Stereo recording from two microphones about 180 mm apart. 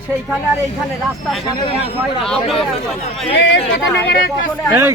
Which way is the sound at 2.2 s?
5° left (ahead or behind).